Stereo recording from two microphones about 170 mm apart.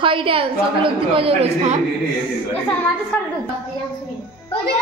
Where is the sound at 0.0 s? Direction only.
30° right (ahead or behind).